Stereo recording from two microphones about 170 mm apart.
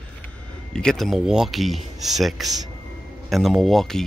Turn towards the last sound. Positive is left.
turn(degrees=0)  # may be behind; listen again after turning